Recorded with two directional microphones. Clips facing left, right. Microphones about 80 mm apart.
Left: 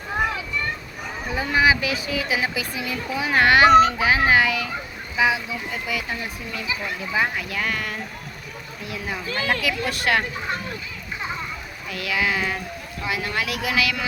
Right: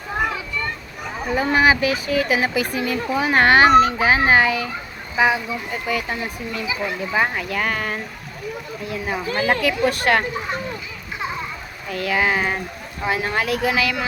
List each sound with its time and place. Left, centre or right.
1.3 s speech: right
9.3 s speech: right
11.9 s speech: right